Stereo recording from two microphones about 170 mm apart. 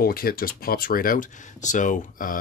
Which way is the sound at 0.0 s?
60° left (ahead or behind).